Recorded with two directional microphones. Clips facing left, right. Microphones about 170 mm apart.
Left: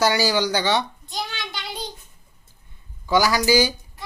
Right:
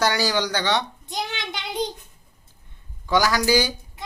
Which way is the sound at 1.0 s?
20° right (ahead or behind).